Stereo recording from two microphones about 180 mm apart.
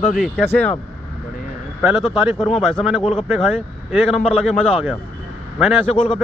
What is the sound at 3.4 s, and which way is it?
A man's voice, 5° left (ahead or behind).